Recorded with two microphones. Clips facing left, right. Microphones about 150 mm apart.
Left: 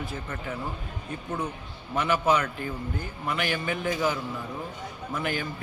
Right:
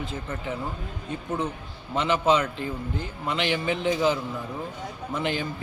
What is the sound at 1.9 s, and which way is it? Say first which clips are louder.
A man's voice: right 2 dB; 20° right (ahead or behind).